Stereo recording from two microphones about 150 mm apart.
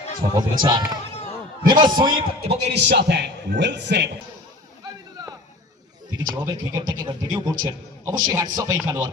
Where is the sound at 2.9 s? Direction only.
90° right.